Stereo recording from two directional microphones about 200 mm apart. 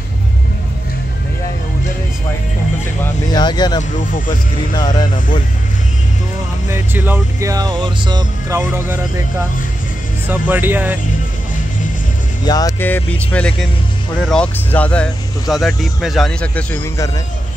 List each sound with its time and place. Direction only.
3.3 s speech: 20° left (ahead or behind)
6.7 s speech: 10° right (ahead or behind)
10.2 s speech: 10° right (ahead or behind)
12.4 s speech: 20° left (ahead or behind)